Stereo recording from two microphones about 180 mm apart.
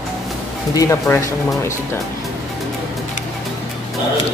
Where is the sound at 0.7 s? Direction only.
15° left (ahead or behind).